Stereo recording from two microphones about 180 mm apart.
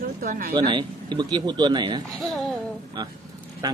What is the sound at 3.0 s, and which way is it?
Speech, 25° right (ahead or behind).